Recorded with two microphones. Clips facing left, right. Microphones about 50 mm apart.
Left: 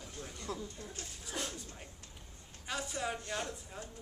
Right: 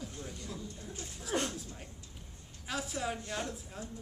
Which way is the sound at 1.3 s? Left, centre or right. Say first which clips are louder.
Right 7 dB; right.